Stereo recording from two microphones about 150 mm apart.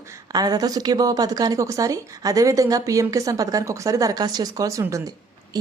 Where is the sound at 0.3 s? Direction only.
25° right (ahead or behind).